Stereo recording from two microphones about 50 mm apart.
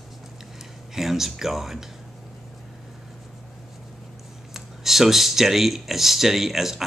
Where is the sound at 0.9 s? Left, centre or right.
Centre.